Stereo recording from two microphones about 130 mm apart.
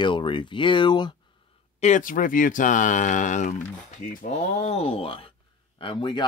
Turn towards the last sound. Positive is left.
turn(degrees=35)  # may be behind; listen again after turning